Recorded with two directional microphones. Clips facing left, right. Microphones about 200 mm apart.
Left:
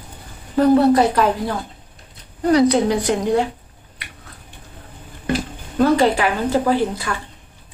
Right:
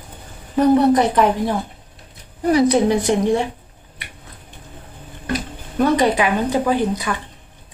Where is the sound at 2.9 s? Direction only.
25° right (ahead or behind).